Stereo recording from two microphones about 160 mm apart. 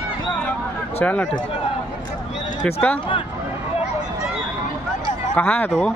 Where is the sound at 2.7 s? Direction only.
10° left (ahead or behind).